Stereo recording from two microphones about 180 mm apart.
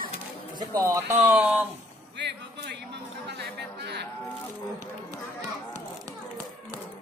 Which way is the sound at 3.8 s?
65° right (ahead or behind).